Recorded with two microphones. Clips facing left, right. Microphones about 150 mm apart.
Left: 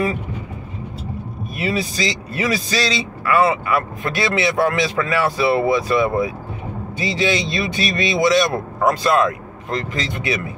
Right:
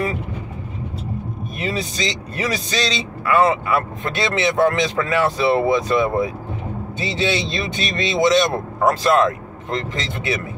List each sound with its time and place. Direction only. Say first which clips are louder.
1.6 s speech: left 3 dB; 25° right (ahead or behind)